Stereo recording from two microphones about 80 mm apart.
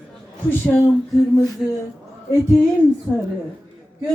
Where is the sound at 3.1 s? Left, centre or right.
Left.